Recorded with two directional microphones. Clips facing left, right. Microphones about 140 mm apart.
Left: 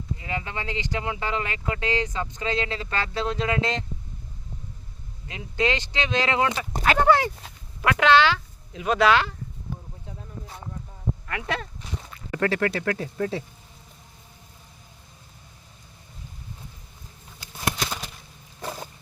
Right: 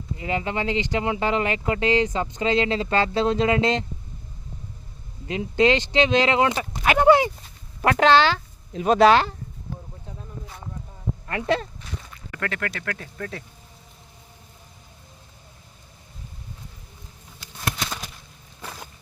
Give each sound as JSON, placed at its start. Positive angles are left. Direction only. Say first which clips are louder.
{"t": 0.2, "sound": "speech", "louder": "right 9 dB", "side_deg": -25}
{"t": 5.3, "sound": "speech", "louder": "right 6 dB", "side_deg": -25}
{"t": 7.8, "sound": "speech", "louder": "right 2 dB", "side_deg": -35}
{"t": 11.3, "sound": "speech", "louder": "right 9 dB", "side_deg": -30}
{"t": 12.3, "sound": "speech", "louder": "left 6 dB", "side_deg": 30}